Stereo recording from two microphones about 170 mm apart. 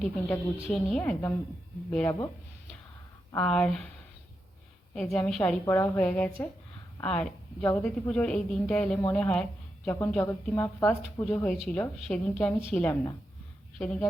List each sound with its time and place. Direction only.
0.0 s a woman's voice: 5° left (ahead or behind)
3.4 s a woman's voice: 5° left (ahead or behind)
4.9 s a woman's voice: 5° left (ahead or behind)